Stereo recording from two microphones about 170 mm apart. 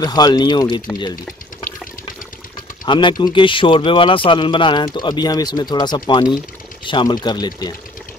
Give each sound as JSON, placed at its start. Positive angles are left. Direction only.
{"t": 0.0, "sound": "speech", "side_deg": 25}
{"t": 2.8, "sound": "speech", "side_deg": 30}